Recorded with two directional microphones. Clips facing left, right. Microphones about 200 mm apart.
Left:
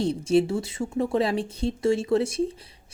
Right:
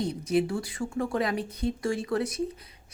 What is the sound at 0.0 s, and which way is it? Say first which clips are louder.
Speech: left 5 dB; 30° left (ahead or behind).